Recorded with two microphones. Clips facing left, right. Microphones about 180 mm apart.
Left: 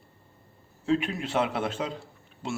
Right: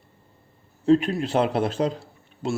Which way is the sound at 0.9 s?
40° right (ahead or behind).